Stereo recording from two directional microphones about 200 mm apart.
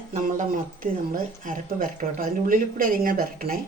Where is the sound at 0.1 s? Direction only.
40° right (ahead or behind).